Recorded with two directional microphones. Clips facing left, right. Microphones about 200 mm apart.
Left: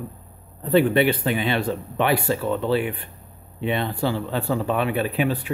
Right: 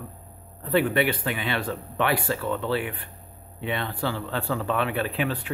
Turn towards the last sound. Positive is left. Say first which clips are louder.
# left 4 dB
turn(degrees=10)  # may be behind; listen again after turning